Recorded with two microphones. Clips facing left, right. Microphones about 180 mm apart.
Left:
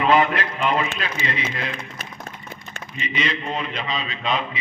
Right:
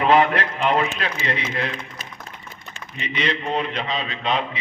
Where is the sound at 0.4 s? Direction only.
65° right (ahead or behind).